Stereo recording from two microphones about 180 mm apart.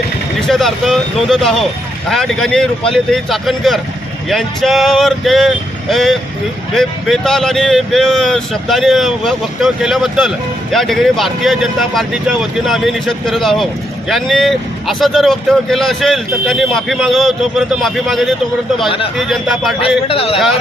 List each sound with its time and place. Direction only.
0.4 s speech: centre (ahead or behind)
20.1 s a man's voice: 30° left (ahead or behind)